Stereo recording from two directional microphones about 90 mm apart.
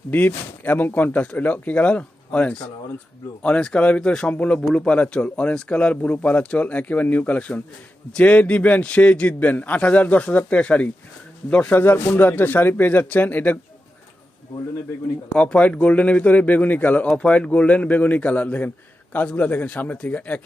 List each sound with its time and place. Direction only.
0.1 s speech: 20° left (ahead or behind)
15.3 s speech: 10° left (ahead or behind)